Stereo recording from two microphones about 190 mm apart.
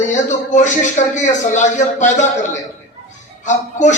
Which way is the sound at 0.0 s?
40° left (ahead or behind).